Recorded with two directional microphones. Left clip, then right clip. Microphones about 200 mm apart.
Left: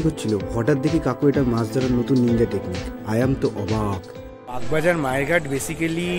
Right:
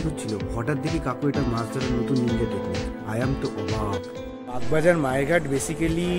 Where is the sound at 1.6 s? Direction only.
Centre (ahead or behind).